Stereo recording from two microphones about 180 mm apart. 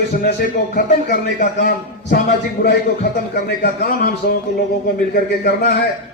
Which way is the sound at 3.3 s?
55° left (ahead or behind).